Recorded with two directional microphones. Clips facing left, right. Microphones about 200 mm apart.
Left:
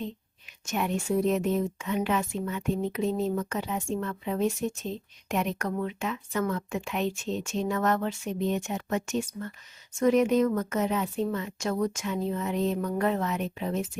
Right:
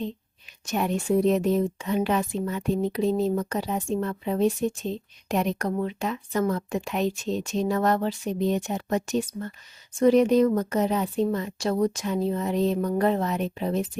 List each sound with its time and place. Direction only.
0.6 s speech: 35° right (ahead or behind)